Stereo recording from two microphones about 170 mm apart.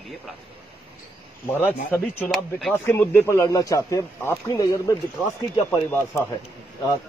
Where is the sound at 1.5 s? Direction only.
10° left (ahead or behind).